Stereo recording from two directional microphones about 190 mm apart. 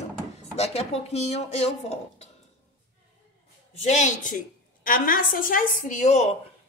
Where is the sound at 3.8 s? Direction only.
40° left (ahead or behind).